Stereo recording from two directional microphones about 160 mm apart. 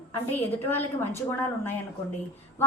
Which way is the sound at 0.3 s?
10° left (ahead or behind).